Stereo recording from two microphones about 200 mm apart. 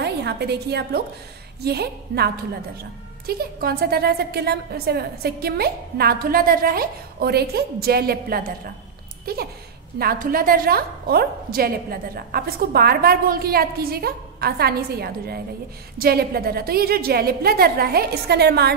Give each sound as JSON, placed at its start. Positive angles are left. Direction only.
{"t": 0.0, "sound": "a woman's voice", "side_deg": -55}